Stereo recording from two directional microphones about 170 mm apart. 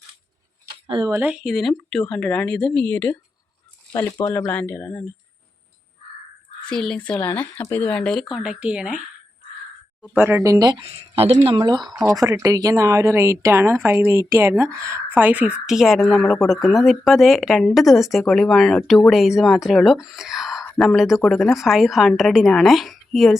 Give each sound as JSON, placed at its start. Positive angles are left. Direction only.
{"t": 0.9, "sound": "speech", "side_deg": -25}
{"t": 1.2, "sound": "speech", "side_deg": -5}
{"t": 4.2, "sound": "speech", "side_deg": 20}
{"t": 6.7, "sound": "speech", "side_deg": 5}
{"t": 10.2, "sound": "speech", "side_deg": -10}
{"t": 10.8, "sound": "speech", "side_deg": -35}
{"t": 11.5, "sound": "speech", "side_deg": -25}